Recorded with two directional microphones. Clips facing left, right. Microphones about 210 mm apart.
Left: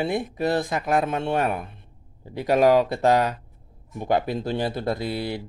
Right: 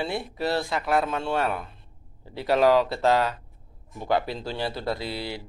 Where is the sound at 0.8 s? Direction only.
45° left (ahead or behind).